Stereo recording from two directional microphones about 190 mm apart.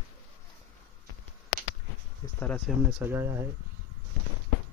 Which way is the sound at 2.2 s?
20° left (ahead or behind).